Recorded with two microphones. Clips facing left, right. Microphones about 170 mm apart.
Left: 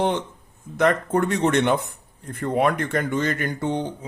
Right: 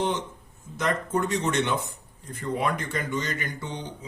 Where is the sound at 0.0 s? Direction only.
60° left (ahead or behind).